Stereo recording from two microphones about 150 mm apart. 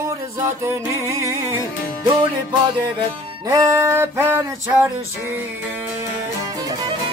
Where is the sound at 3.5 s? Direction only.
20° right (ahead or behind).